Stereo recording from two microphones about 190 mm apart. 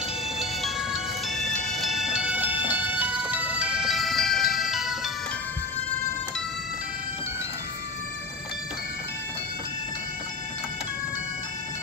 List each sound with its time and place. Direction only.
1.4 s music: centre (ahead or behind)